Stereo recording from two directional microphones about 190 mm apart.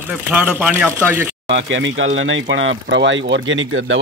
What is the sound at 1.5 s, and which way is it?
Speech, 80° right.